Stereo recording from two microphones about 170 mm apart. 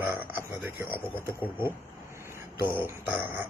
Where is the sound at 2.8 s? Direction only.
10° right (ahead or behind).